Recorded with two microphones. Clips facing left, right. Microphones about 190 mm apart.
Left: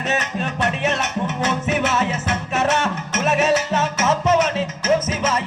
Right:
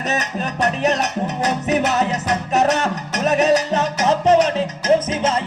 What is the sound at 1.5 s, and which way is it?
Music, 35° right (ahead or behind).